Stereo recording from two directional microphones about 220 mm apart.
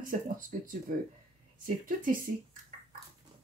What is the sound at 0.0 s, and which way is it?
Speech, 40° right (ahead or behind).